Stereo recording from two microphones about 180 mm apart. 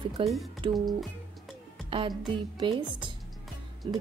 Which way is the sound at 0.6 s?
25° right (ahead or behind).